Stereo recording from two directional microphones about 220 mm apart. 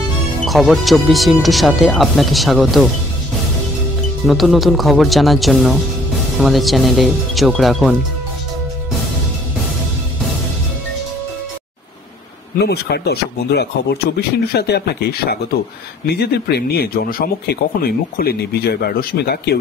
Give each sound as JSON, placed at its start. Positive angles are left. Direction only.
{"t": 0.5, "sound": "speech", "side_deg": 0}
{"t": 4.3, "sound": "speech", "side_deg": 0}
{"t": 12.5, "sound": "speech", "side_deg": 50}